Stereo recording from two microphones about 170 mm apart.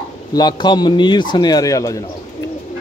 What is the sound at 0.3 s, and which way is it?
A man's voice, 25° left (ahead or behind).